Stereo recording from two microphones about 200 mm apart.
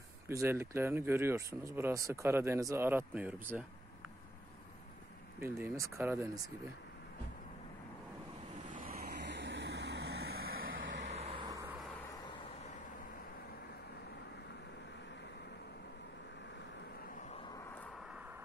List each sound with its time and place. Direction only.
0.3 s speech: 15° right (ahead or behind)
5.4 s speech: 10° right (ahead or behind)
8.6 s vehicle: 45° right (ahead or behind)
10.7 s vehicle: 70° right (ahead or behind)
11.1 s vehicle: 30° right (ahead or behind)